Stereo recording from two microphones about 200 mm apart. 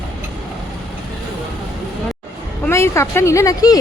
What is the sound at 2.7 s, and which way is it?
Speech, 15° left (ahead or behind).